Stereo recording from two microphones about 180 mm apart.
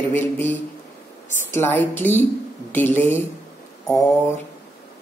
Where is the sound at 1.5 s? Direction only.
10° left (ahead or behind).